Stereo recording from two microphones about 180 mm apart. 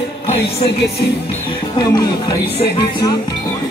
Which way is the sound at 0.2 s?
30° left (ahead or behind).